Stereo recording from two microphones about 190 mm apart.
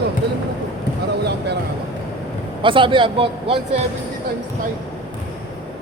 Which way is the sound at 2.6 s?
25° right (ahead or behind).